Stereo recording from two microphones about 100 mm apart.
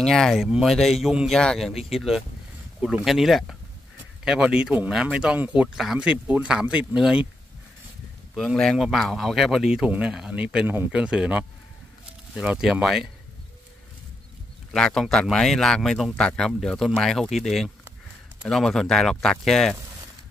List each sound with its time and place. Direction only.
0.0 s speech: 5° left (ahead or behind)
8.7 s speech: centre (ahead or behind)
14.7 s speech: 5° left (ahead or behind)